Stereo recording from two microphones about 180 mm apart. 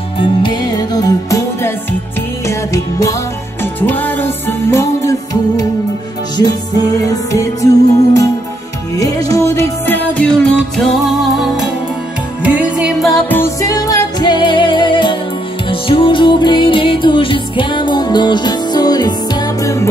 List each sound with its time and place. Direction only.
0.4 s music: 20° left (ahead or behind)
7.0 s music: 20° left (ahead or behind); by 13.4 s centre (ahead or behind)
13.4 s music: 20° left (ahead or behind)